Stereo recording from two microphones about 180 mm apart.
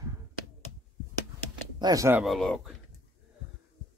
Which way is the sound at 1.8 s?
20° right (ahead or behind).